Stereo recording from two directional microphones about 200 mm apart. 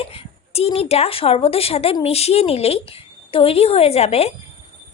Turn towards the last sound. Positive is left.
turn(degrees=30)  # may be behind; listen again after turning